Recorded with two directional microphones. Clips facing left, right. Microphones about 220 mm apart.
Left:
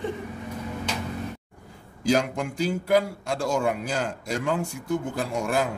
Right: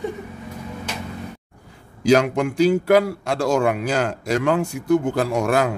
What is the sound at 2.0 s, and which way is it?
A man's voice, 75° right (ahead or behind).